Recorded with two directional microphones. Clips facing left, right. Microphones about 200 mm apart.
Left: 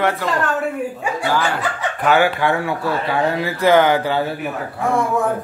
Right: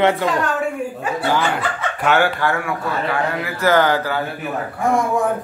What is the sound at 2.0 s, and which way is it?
Speech, 5° left (ahead or behind).